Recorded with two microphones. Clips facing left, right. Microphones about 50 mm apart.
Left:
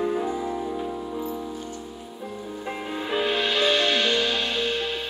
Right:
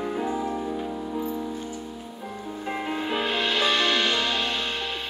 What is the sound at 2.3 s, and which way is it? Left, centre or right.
Music, centre.